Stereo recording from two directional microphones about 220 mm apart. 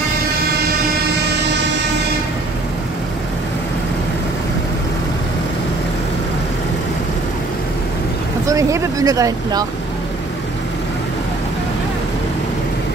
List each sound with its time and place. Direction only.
8.5 s speech: 15° right (ahead or behind)